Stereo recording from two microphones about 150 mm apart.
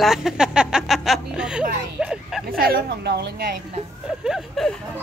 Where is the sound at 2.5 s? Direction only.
80° right.